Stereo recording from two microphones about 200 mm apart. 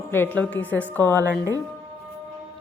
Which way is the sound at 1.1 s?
15° right (ahead or behind).